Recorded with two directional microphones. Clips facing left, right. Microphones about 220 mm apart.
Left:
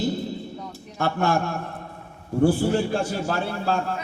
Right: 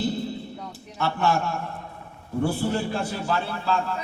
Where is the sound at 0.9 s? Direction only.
50° left (ahead or behind).